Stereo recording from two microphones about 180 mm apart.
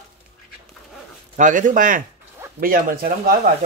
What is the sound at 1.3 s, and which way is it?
Speech, 45° right (ahead or behind).